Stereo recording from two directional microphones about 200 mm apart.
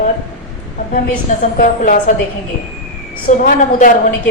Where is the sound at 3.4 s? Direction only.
40° left (ahead or behind).